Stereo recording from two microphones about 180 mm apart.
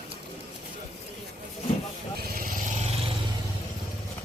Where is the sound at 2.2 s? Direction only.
50° right (ahead or behind).